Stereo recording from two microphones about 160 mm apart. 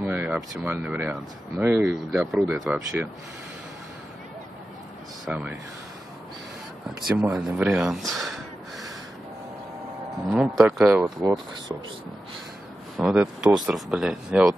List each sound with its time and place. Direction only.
0.0 s a sound: 10° right (ahead or behind)
0.6 s speech: 10° right (ahead or behind)
2.3 s speech: centre (ahead or behind)
5.2 s speech: 5° right (ahead or behind)
7.1 s speech: 5° right (ahead or behind)
10.3 s speech: centre (ahead or behind)
11.1 s speech: 25° right (ahead or behind)
12.9 s speech: 5° right (ahead or behind)